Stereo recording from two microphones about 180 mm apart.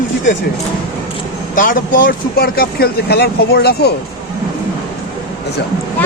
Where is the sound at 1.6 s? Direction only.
50° left (ahead or behind).